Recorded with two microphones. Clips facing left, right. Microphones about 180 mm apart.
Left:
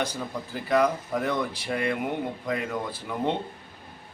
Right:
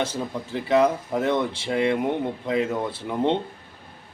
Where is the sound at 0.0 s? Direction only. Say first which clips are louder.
Right 3 dB; 25° right (ahead or behind).